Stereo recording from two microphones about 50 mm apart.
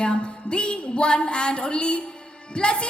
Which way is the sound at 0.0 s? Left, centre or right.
Centre.